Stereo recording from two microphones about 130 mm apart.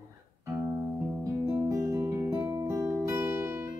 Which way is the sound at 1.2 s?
25° right (ahead or behind).